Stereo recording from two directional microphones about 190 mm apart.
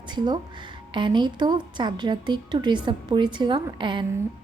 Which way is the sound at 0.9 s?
25° right (ahead or behind).